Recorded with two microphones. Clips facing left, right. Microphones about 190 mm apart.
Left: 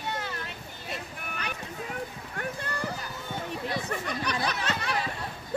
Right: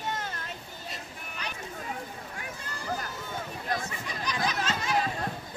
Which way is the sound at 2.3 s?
65° left (ahead or behind).